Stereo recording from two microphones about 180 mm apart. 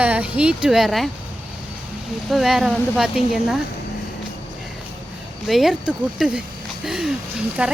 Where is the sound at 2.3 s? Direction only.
Centre (ahead or behind).